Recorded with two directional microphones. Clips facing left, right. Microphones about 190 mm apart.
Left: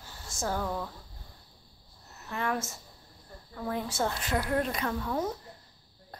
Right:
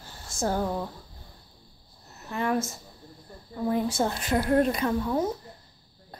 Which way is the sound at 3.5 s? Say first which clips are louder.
Right 7 dB; 15° right (ahead or behind).